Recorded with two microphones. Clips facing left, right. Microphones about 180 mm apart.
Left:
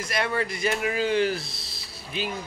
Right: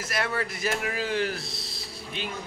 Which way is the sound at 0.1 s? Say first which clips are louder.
Left 3 dB; centre (ahead or behind).